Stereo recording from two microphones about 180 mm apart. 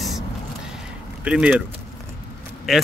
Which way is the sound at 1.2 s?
5° right (ahead or behind).